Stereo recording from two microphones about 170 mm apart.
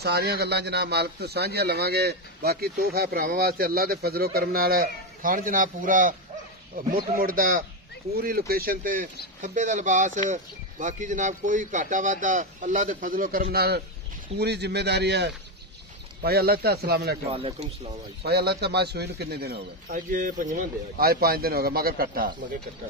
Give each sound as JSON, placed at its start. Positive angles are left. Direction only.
{"t": 0.0, "sound": "speech", "side_deg": -70}
{"t": 14.4, "sound": "a man's voice", "side_deg": -75}
{"t": 16.2, "sound": "speech", "side_deg": -65}
{"t": 17.3, "sound": "speech", "side_deg": -35}
{"t": 18.2, "sound": "speech", "side_deg": -75}